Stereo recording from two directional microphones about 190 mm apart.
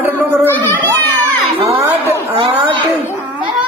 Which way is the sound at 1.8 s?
10° right (ahead or behind).